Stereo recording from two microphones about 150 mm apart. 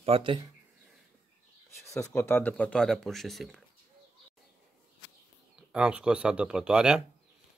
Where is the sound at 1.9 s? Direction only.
20° left (ahead or behind); by 3.6 s centre (ahead or behind).